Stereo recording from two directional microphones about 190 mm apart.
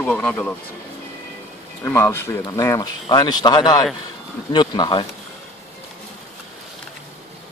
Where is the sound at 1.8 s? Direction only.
15° left (ahead or behind).